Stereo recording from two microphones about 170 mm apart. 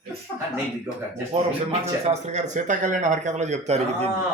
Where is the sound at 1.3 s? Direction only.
35° right (ahead or behind).